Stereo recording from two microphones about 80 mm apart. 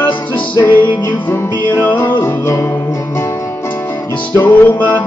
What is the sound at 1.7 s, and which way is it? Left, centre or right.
Music, left.